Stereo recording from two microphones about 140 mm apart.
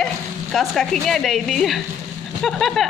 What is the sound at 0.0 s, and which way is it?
A child's voice, centre (ahead or behind).